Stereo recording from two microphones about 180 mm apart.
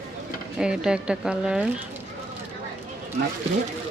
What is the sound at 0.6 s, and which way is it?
Speech, 5° right (ahead or behind).